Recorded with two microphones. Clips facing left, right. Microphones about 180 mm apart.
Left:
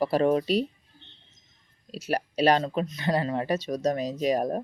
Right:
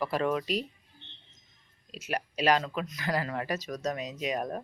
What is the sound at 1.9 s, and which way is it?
Speech, 35° left (ahead or behind).